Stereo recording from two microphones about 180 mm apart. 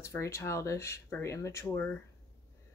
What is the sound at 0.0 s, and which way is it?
Speech, 15° left (ahead or behind).